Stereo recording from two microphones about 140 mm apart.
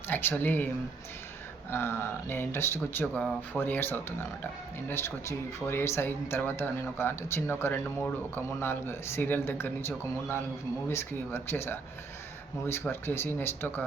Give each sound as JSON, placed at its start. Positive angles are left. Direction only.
{"t": 0.1, "sound": "speech", "side_deg": 15}
{"t": 1.7, "sound": "speech", "side_deg": 15}